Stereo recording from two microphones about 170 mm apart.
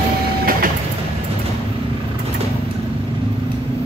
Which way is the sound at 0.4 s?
55° right (ahead or behind).